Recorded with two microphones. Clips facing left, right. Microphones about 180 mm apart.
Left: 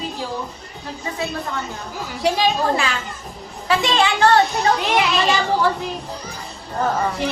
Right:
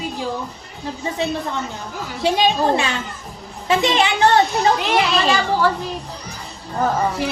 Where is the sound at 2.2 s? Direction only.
25° right (ahead or behind).